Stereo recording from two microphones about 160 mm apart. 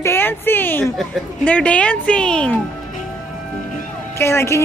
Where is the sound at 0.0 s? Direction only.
15° left (ahead or behind).